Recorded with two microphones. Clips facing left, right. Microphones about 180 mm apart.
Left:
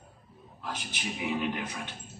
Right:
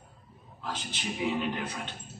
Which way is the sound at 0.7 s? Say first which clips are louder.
Right 1 dB; 10° left (ahead or behind).